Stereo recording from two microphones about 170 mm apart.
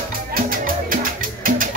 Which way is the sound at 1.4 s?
55° right (ahead or behind).